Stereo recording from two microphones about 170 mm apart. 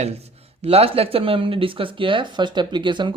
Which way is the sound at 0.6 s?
35° right (ahead or behind).